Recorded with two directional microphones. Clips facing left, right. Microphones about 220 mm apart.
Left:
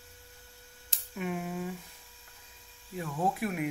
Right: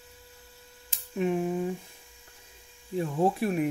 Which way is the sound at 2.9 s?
30° right (ahead or behind).